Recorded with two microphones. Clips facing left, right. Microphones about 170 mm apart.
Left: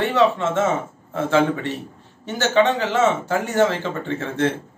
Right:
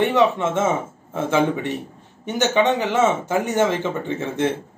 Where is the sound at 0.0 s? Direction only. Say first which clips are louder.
Right 1 dB; 20° right (ahead or behind).